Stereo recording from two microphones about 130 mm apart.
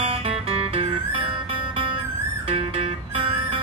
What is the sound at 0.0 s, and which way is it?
Music, 45° right (ahead or behind).